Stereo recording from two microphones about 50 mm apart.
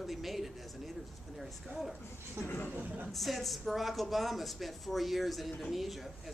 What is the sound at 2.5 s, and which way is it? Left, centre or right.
Speech, left.